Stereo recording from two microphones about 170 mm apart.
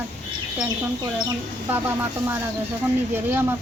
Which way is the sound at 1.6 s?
15° right (ahead or behind).